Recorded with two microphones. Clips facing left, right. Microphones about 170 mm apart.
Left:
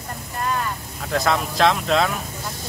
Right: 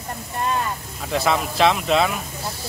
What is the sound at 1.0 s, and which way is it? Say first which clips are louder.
Speech: even; 5° right (ahead or behind).